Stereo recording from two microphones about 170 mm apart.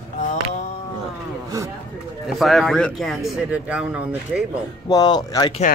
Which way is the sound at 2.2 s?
Centre (ahead or behind).